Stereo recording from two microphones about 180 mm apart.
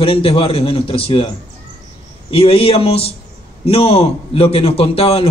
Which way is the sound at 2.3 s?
30° left (ahead or behind).